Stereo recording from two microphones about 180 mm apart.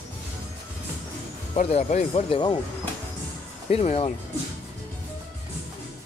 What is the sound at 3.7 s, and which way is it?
Speech, 35° left (ahead or behind).